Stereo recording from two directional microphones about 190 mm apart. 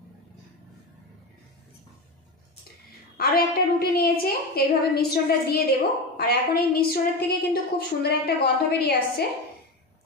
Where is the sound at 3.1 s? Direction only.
55° left (ahead or behind).